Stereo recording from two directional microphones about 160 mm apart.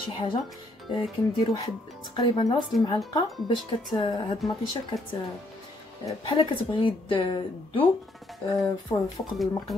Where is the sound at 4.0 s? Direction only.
30° left (ahead or behind).